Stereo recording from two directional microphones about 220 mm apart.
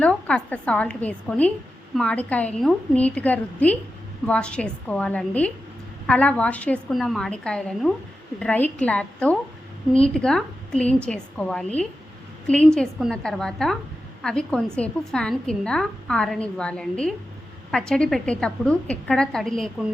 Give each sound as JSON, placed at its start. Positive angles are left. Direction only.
{"t": 0.0, "sound": "a woman's voice", "side_deg": 5}